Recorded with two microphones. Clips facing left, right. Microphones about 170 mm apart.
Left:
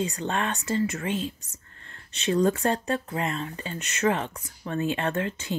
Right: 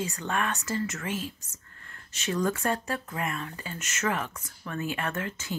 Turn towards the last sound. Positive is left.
turn(degrees=20)  # may be behind; listen again after turning